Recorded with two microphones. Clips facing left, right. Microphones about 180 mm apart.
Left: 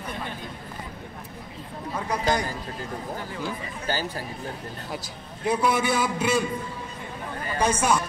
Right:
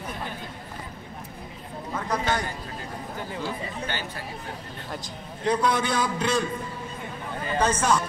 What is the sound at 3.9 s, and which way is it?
Speech, 35° left (ahead or behind).